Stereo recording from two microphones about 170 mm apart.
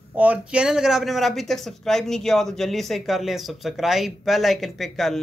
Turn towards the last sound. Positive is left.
turn(degrees=0)  # may be behind; listen again after turning